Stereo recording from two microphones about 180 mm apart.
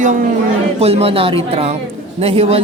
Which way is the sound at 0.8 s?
35° right (ahead or behind).